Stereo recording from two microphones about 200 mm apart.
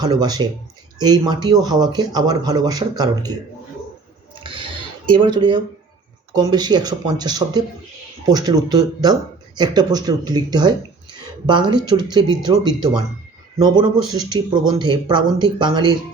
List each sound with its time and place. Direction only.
0.0 s speech: 20° right (ahead or behind)
4.4 s a sound: 25° right (ahead or behind)
5.1 s speech: 25° right (ahead or behind)